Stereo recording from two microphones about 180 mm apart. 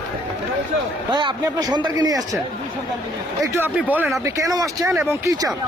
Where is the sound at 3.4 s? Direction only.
15° right (ahead or behind).